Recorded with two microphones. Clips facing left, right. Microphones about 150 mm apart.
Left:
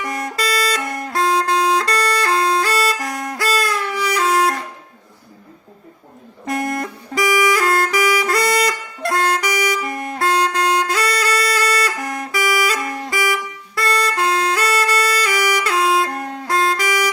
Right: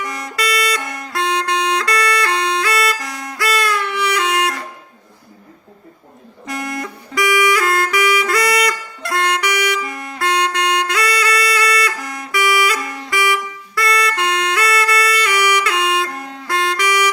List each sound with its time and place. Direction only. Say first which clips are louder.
0.0 s music: left 2 dB; 50° left (ahead or behind)
0.3 s a sound: right 2 dB; 35° left (ahead or behind)
0.8 s music: left 3 dB; 50° left (ahead or behind)
1.1 s music: left 2 dB; 40° left (ahead or behind)
3.0 s music: left 4 dB; 50° left (ahead or behind)
3.3 s music: right 2 dB; 35° left (ahead or behind)
6.4 s a sound: left 3 dB; 50° left (ahead or behind)
7.3 s saxophone: even; 35° left (ahead or behind)
9.0 s music: left 2 dB; 45° left (ahead or behind)
11.9 s music: left 4 dB; 50° left (ahead or behind)
12.3 s music: right 3 dB; 40° left (ahead or behind)
12.8 s music: left 3 dB; 50° left (ahead or behind)
13.1 s music: right 4 dB; 40° left (ahead or behind)
16.5 s music: even; 40° left (ahead or behind)